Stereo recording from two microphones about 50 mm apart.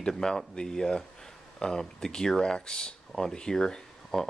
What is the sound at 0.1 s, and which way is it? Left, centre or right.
Speech, centre.